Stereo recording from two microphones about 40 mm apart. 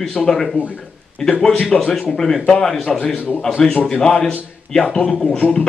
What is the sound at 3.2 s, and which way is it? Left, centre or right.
Speech, left.